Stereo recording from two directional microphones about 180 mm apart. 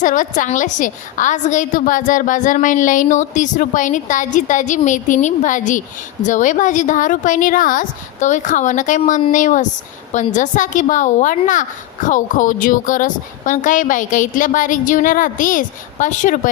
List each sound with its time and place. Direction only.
0.0 s a woman's voice: 45° left (ahead or behind)